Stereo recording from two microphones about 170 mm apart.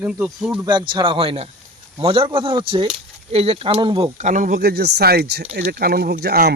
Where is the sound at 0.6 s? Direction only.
25° right (ahead or behind).